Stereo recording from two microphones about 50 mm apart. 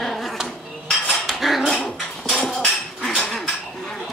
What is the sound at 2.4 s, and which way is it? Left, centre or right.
Hammer, centre.